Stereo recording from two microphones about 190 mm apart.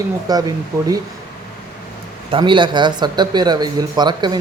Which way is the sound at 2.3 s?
25° right (ahead or behind).